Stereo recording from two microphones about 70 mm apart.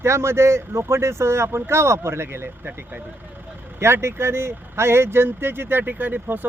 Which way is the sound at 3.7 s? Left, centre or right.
Right.